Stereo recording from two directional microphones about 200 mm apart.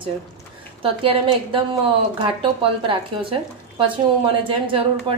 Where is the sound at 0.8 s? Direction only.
25° right (ahead or behind).